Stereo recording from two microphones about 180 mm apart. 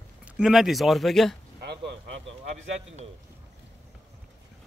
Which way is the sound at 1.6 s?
70° right (ahead or behind).